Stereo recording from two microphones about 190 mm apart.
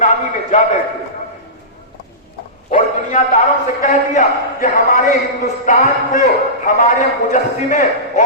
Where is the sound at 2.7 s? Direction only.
40° left (ahead or behind).